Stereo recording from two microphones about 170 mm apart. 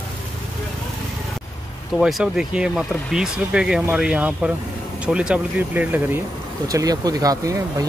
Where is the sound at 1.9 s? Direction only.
Centre (ahead or behind).